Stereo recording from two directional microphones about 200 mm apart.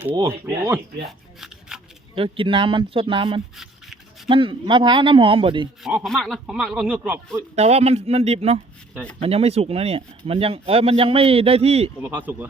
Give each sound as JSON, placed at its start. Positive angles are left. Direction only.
{"t": 0.1, "sound": "speech", "side_deg": -20}
{"t": 1.7, "sound": "a sound", "side_deg": -5}
{"t": 2.1, "sound": "speech", "side_deg": -25}
{"t": 5.8, "sound": "speech", "side_deg": 0}
{"t": 7.5, "sound": "speech", "side_deg": -30}
{"t": 12.0, "sound": "speech", "side_deg": -10}